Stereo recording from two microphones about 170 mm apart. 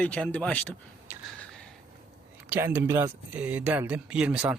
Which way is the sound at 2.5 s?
15° right (ahead or behind).